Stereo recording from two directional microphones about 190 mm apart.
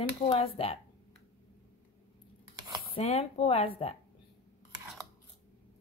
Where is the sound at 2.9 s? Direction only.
30° left (ahead or behind).